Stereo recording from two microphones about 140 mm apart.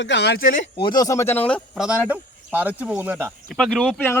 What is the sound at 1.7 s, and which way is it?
Speech, 5° right (ahead or behind).